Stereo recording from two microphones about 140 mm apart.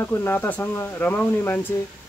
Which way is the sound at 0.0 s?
15° left (ahead or behind).